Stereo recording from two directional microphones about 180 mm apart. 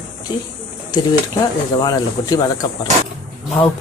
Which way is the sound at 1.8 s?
20° left (ahead or behind).